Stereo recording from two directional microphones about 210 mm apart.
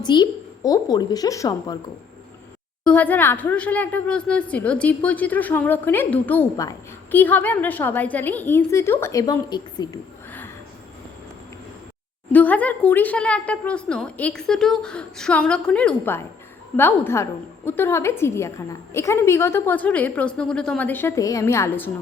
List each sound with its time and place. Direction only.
0.0 s speech: 20° left (ahead or behind)
2.8 s speech: 10° left (ahead or behind)
12.3 s speech: 5° left (ahead or behind)